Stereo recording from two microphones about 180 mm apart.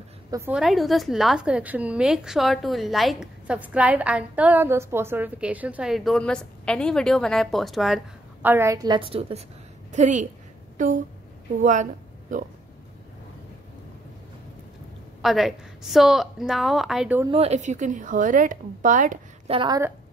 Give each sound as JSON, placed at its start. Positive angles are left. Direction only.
{"t": 0.5, "sound": "a woman's voice", "side_deg": 0}
{"t": 15.2, "sound": "a woman's voice", "side_deg": 0}
{"t": 17.3, "sound": "a woman's voice", "side_deg": -35}
{"t": 19.5, "sound": "a woman's voice", "side_deg": -25}